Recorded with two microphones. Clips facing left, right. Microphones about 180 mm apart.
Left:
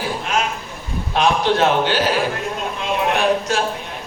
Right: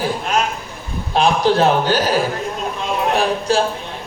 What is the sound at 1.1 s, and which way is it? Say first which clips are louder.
Speech: right 2 dB; 35° right (ahead or behind).